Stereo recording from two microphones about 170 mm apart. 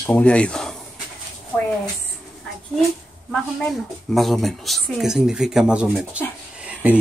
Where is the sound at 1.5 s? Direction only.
10° left (ahead or behind).